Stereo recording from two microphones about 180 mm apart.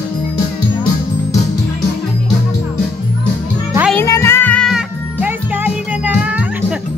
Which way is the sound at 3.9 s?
15° left (ahead or behind).